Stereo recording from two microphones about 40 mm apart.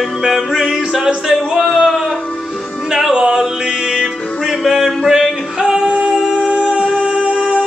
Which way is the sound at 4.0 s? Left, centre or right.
Centre.